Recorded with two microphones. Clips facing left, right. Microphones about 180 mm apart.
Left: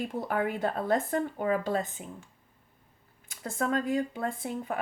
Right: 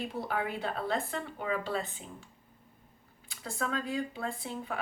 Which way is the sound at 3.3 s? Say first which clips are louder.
Left 5 dB; 45° left (ahead or behind).